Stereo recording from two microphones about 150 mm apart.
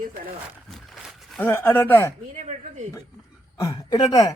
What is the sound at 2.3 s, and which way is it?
Speech, 55° right (ahead or behind).